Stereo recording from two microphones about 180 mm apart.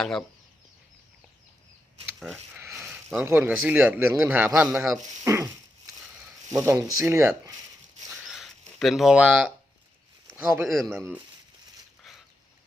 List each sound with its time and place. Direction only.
0.0 s speech: 5° left (ahead or behind)
2.1 s speech: centre (ahead or behind); by 5.5 s 15° right (ahead or behind)
6.5 s speech: 15° right (ahead or behind)
8.3 s a sound: centre (ahead or behind)
10.3 s speech: 15° right (ahead or behind)
10.7 s speech: centre (ahead or behind)
12.1 s a sound: centre (ahead or behind)